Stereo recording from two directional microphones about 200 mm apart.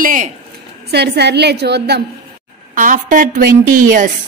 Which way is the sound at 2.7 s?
40° right (ahead or behind).